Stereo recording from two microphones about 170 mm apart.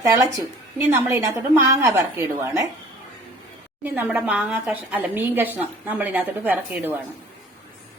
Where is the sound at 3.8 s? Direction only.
10° right (ahead or behind).